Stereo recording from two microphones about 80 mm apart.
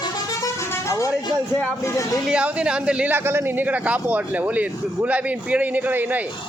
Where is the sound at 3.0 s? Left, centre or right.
Right.